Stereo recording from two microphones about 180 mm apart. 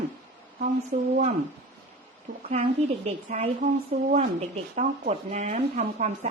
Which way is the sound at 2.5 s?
40° right (ahead or behind).